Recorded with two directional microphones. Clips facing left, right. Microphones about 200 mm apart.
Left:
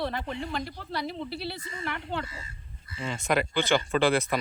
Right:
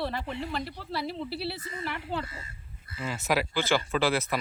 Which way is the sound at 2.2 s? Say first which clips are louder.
Even; 55° right (ahead or behind).